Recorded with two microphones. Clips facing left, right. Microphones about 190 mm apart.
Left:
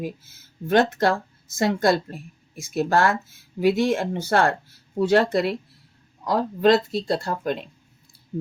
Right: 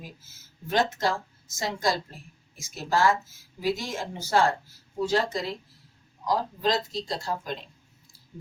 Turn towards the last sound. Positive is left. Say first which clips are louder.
# left 6 dB
turn(degrees=60)  # may be behind; listen again after turning